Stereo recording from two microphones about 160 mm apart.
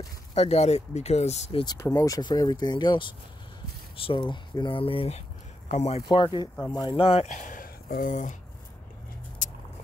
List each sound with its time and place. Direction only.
0.3 s speech: 40° left (ahead or behind)
1.6 s speech: 25° left (ahead or behind); by 6.0 s 45° left (ahead or behind)
6.0 s speech: 30° left (ahead or behind); by 8.4 s 50° left (ahead or behind)
9.4 s a sound: 50° left (ahead or behind)